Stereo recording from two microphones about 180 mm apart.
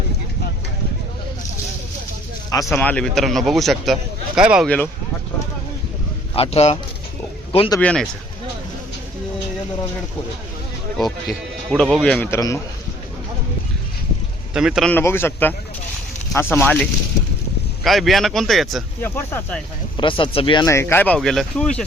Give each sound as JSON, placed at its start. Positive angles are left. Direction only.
{"t": 2.7, "sound": "speech", "side_deg": 5}
{"t": 6.3, "sound": "speech", "side_deg": 35}
{"t": 7.8, "sound": "speech", "side_deg": 5}
{"t": 10.9, "sound": "speech", "side_deg": 0}
{"t": 14.5, "sound": "speech", "side_deg": -5}
{"t": 14.9, "sound": "speech", "side_deg": 15}
{"t": 19.0, "sound": "speech", "side_deg": 10}
{"t": 20.0, "sound": "speech", "side_deg": 25}
{"t": 20.7, "sound": "speech", "side_deg": 15}